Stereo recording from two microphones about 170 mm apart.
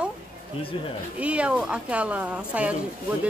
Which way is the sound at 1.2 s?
5° right (ahead or behind).